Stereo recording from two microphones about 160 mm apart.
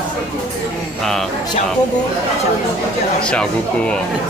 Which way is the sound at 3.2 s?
5° left (ahead or behind).